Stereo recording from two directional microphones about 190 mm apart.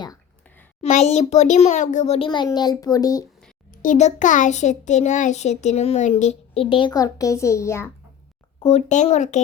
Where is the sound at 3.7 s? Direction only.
45° left (ahead or behind); by 7.9 s 15° left (ahead or behind).